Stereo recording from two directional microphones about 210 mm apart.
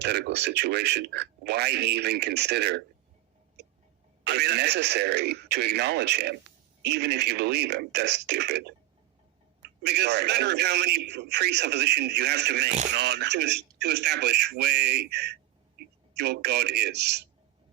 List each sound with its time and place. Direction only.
0.0 s a man's voice: 55° right (ahead or behind)
4.2 s a man's voice: 50° right (ahead or behind)
9.8 s a man's voice: 50° right (ahead or behind)